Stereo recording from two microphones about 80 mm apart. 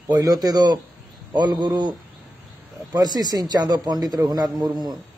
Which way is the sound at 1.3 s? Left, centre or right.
Right.